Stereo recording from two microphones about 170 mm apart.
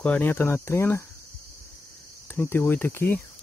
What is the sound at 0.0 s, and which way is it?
Speech, 10° left (ahead or behind).